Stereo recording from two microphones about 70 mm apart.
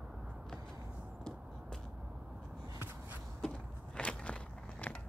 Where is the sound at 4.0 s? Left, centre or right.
Centre.